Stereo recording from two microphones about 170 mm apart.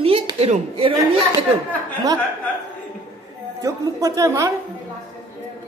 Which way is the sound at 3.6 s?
20° right (ahead or behind).